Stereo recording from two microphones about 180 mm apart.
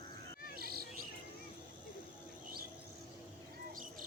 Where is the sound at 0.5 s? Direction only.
55° right (ahead or behind).